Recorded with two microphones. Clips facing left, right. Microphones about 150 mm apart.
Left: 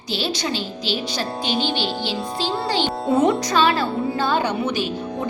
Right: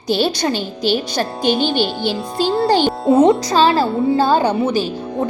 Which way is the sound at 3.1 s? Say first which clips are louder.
Right 6 dB; 25° right (ahead or behind).